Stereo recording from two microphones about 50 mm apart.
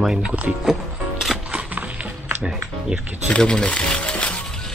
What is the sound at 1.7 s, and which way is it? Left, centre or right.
Music, right.